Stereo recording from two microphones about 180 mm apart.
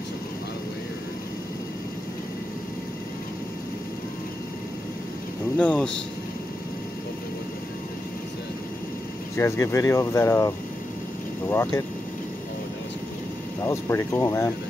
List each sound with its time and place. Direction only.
5.6 s speech: 10° left (ahead or behind)
9.4 s speech: 15° left (ahead or behind)
13.7 s speech: 15° left (ahead or behind)